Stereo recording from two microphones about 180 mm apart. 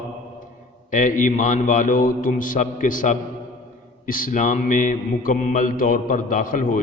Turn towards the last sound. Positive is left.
turn(degrees=50)  # may be behind; listen again after turning